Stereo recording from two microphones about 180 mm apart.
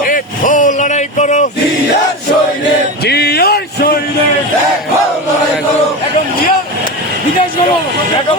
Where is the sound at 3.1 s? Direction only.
65° left (ahead or behind).